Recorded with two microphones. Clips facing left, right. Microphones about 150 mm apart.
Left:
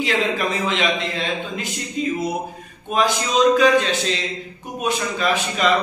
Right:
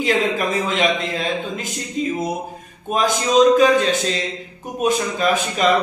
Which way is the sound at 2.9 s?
45° right (ahead or behind).